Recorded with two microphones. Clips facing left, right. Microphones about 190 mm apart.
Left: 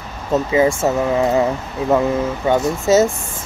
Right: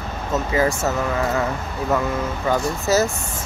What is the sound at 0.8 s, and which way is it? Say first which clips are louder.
Speech: left 5 dB; 25° left (ahead or behind).